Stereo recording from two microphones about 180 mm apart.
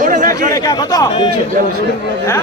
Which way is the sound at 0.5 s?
20° left (ahead or behind).